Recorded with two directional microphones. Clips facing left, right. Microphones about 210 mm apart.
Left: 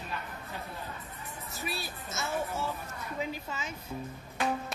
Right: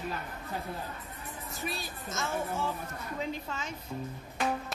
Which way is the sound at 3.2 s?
5° left (ahead or behind).